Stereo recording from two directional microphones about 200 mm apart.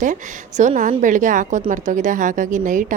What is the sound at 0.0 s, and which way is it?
A woman's voice, 40° right (ahead or behind).